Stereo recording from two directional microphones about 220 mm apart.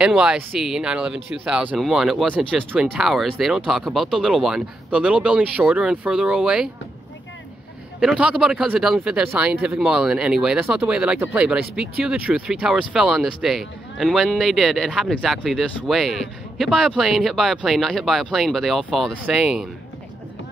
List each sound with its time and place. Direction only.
0.0 s speech: 5° right (ahead or behind)
8.0 s speech: 5° right (ahead or behind)